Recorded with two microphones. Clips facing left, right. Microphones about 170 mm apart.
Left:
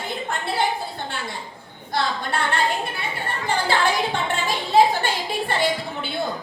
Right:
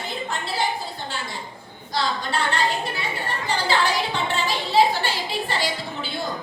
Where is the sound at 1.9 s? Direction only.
55° left (ahead or behind).